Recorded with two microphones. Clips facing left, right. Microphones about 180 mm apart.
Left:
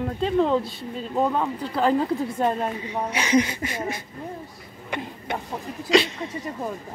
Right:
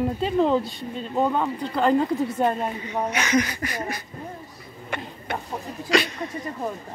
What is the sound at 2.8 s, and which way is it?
Speech, 30° left (ahead or behind).